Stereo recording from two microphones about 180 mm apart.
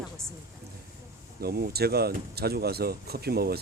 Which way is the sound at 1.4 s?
60° right (ahead or behind).